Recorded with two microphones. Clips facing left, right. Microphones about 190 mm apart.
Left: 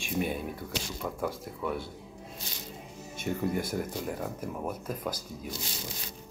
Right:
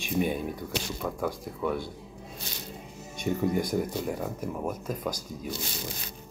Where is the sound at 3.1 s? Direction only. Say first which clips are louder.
Right 4 dB; 5° left (ahead or behind).